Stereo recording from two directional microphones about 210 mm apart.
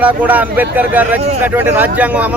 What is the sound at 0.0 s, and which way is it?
Speech, 5° right (ahead or behind).